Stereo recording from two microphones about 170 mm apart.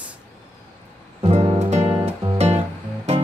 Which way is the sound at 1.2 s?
35° right (ahead or behind).